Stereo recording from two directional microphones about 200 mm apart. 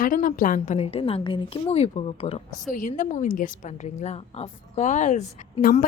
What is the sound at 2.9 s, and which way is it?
A woman's voice, 40° left (ahead or behind).